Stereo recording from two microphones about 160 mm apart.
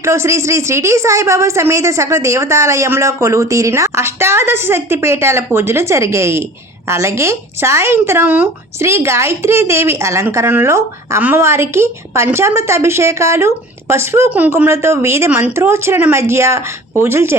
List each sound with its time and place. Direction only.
0.0 s a woman's voice: 15° right (ahead or behind)